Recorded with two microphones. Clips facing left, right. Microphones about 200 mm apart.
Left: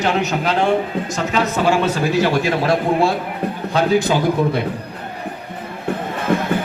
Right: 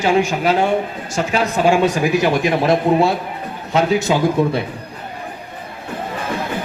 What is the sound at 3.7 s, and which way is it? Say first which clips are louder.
Speech: right 1 dB; 25° right (ahead or behind).